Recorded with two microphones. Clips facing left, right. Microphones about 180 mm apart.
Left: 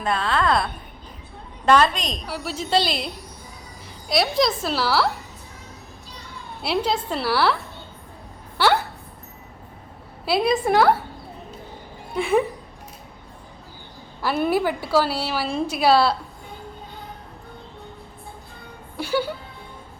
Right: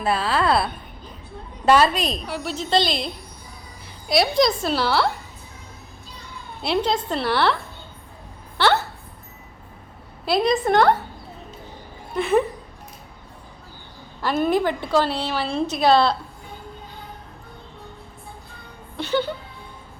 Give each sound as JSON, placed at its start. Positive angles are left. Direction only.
{"t": 0.0, "sound": "a woman's voice", "side_deg": -5}
{"t": 4.1, "sound": "a woman's voice", "side_deg": 0}
{"t": 6.6, "sound": "a woman's voice", "side_deg": 5}
{"t": 8.5, "sound": "a sound", "side_deg": 10}
{"t": 10.2, "sound": "a woman's voice", "side_deg": 5}
{"t": 12.1, "sound": "a woman's voice", "side_deg": 10}
{"t": 14.2, "sound": "a woman's voice", "side_deg": 10}
{"t": 18.9, "sound": "a woman's voice", "side_deg": 10}